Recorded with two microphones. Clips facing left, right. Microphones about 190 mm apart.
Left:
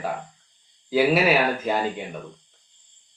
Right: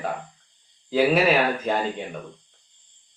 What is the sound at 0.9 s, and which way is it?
Speech, 5° left (ahead or behind).